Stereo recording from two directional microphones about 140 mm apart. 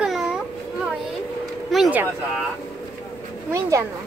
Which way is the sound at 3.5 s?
20° right (ahead or behind).